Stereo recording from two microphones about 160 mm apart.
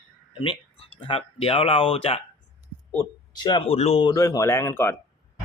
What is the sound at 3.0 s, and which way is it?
Speech, 25° left (ahead or behind).